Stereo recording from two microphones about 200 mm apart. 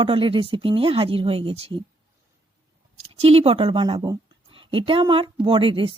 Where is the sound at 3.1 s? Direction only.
30° right (ahead or behind).